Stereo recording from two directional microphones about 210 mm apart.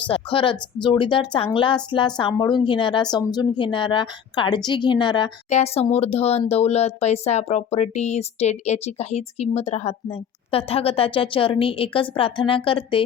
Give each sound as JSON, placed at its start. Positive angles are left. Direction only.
{"t": 0.1, "sound": "speech", "side_deg": 25}